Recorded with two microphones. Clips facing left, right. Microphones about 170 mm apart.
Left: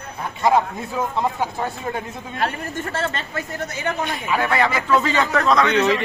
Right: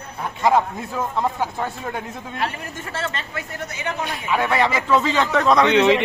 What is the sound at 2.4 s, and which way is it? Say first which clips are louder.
Speech: left 4 dB; 50° left (ahead or behind).